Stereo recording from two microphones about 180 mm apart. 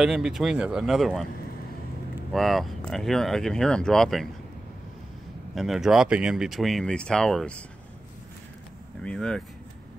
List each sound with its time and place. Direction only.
0.0 s speech: 5° right (ahead or behind)
2.3 s speech: centre (ahead or behind)
5.5 s speech: centre (ahead or behind)
9.0 s speech: 5° left (ahead or behind)